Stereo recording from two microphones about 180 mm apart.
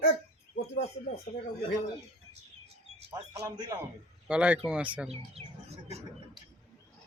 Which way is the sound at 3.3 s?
20° right (ahead or behind).